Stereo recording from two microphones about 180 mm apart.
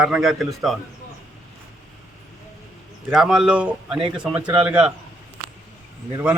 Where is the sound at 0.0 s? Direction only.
Centre (ahead or behind).